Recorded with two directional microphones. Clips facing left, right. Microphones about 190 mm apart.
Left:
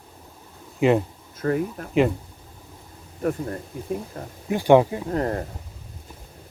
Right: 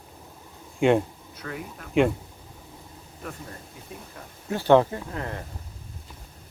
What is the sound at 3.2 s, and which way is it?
Speech, 50° left (ahead or behind).